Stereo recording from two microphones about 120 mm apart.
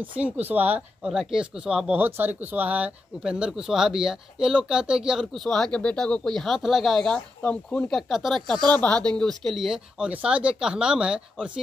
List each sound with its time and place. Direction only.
0.1 s speech: 15° right (ahead or behind)